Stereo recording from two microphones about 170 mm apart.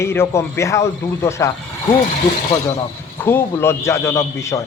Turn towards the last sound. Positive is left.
turn(degrees=15)  # may be behind; listen again after turning